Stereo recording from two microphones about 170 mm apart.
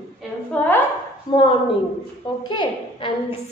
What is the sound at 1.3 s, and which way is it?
Speech, 25° left (ahead or behind).